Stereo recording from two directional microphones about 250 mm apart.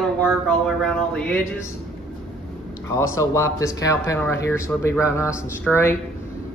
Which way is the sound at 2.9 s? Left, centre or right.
Centre.